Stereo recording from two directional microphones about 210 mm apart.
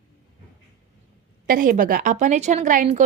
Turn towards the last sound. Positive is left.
turn(degrees=-35)  # may be behind; listen again after turning